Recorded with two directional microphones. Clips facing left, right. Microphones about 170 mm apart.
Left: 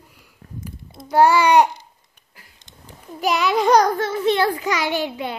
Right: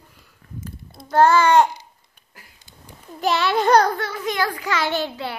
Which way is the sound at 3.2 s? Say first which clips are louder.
Left 1 dB; 5° left (ahead or behind).